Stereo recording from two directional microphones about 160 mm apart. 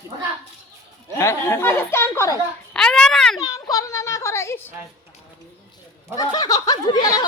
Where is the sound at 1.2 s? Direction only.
15° left (ahead or behind).